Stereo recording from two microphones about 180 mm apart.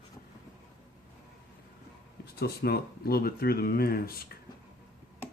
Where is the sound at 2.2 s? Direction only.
60° left (ahead or behind).